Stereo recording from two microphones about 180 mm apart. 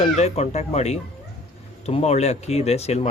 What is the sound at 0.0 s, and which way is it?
Speech, 35° left (ahead or behind).